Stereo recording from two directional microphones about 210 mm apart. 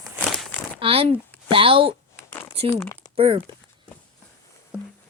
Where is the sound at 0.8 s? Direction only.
25° right (ahead or behind).